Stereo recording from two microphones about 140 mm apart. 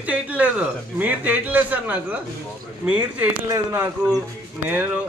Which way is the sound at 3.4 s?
25° right (ahead or behind).